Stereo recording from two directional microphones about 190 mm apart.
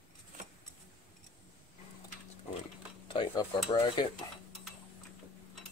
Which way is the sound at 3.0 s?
25° left (ahead or behind).